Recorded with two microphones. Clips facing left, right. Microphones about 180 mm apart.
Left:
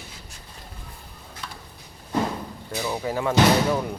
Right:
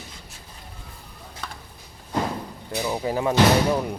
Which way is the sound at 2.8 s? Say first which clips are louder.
Right 2 dB; 10° right (ahead or behind).